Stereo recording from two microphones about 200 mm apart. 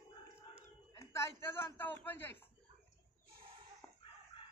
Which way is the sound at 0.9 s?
10° left (ahead or behind).